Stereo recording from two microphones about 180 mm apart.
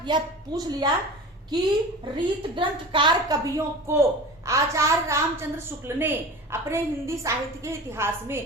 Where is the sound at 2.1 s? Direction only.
30° right (ahead or behind).